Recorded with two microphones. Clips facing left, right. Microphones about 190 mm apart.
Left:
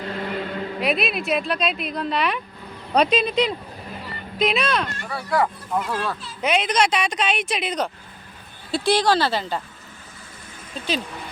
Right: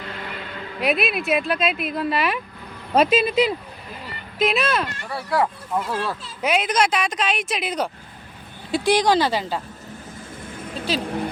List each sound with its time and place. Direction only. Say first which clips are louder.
0.0 s vehicle: left 6 dB; 35° left (ahead or behind)
0.8 s speech: right 2 dB; centre (ahead or behind)